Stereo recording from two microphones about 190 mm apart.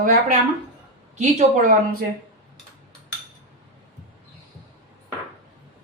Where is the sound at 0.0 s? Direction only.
45° right (ahead or behind).